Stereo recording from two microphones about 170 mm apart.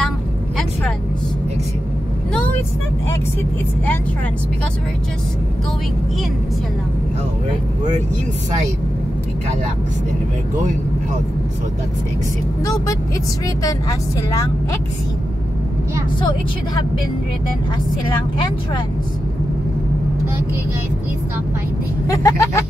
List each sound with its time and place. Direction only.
12.6 s speech: 20° left (ahead or behind)
22.0 s speech: 20° left (ahead or behind)